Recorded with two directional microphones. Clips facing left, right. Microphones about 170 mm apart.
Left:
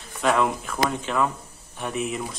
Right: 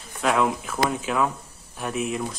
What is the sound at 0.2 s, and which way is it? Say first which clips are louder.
Speech: even; centre (ahead or behind).